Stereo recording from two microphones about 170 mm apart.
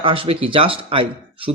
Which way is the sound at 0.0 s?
30° right (ahead or behind).